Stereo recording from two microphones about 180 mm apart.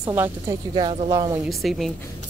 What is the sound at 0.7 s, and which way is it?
Speech, 25° right (ahead or behind).